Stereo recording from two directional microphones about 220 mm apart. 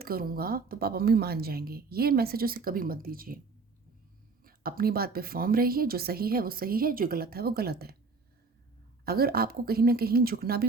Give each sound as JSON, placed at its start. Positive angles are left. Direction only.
{"t": 0.0, "sound": "a woman's voice", "side_deg": -40}
{"t": 4.4, "sound": "a woman's voice", "side_deg": -40}
{"t": 9.0, "sound": "a woman's voice", "side_deg": -45}